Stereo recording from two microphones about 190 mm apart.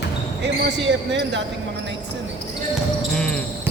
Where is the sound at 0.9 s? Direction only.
65° right (ahead or behind).